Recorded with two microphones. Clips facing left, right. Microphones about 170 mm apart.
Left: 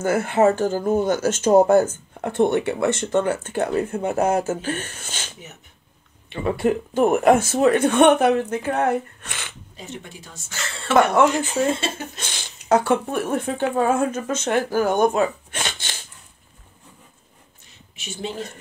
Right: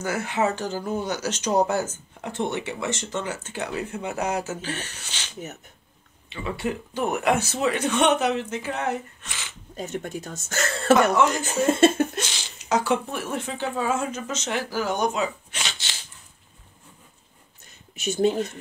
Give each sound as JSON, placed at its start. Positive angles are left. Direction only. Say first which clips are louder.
{"t": 0.0, "sound": "speech", "louder": "left 7 dB", "side_deg": 50}
{"t": 6.3, "sound": "speech", "louder": "left 8 dB", "side_deg": 50}
{"t": 9.8, "sound": "speech", "louder": "right 6 dB", "side_deg": -45}
{"t": 12.2, "sound": "speech", "louder": "right 4 dB", "side_deg": 55}
{"t": 17.9, "sound": "speech", "louder": "right 8 dB", "side_deg": -45}